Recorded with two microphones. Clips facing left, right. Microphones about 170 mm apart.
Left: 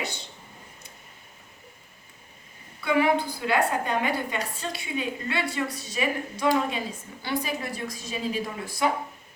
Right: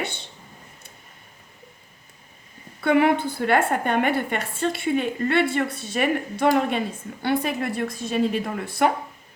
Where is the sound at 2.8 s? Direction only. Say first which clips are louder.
Right 4 dB; 60° right (ahead or behind).